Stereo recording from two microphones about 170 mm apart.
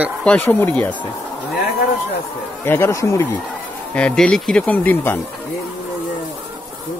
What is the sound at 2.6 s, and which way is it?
Speech, 15° left (ahead or behind).